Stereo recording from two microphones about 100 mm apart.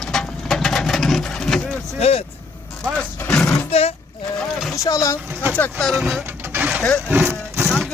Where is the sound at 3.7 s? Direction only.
80° left.